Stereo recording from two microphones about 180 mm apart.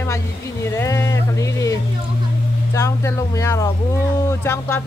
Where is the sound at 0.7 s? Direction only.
15° left (ahead or behind).